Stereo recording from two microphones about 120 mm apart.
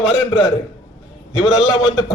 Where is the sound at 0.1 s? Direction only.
50° left (ahead or behind).